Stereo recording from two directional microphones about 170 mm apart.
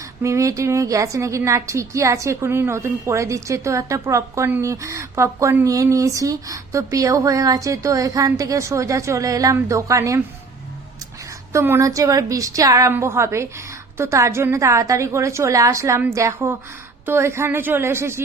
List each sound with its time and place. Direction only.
0.2 s a woman's voice: 15° right (ahead or behind)
11.5 s a woman's voice: 15° right (ahead or behind)